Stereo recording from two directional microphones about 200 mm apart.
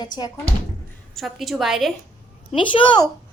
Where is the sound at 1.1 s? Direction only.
Centre (ahead or behind).